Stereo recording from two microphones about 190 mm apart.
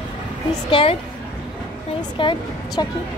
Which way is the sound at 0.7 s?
30° left (ahead or behind).